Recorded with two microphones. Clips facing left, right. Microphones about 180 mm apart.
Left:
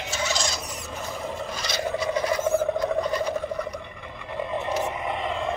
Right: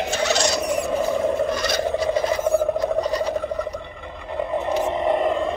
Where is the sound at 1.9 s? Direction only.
30° right (ahead or behind).